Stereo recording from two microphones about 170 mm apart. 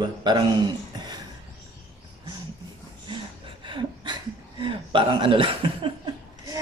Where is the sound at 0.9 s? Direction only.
25° right (ahead or behind).